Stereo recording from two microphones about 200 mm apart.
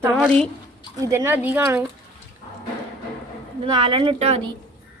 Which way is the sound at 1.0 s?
15° right (ahead or behind).